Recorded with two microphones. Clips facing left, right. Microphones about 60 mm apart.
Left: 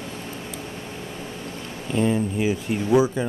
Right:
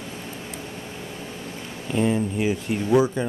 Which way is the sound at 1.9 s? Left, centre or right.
Centre.